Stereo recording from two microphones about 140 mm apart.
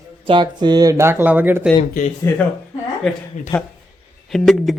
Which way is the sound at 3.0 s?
Centre (ahead or behind).